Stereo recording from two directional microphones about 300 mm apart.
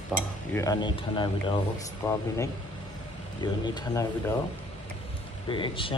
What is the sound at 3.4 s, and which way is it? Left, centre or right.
Speech, centre.